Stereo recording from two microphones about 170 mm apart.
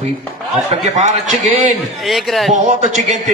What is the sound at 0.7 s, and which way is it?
Speech, 45° right (ahead or behind).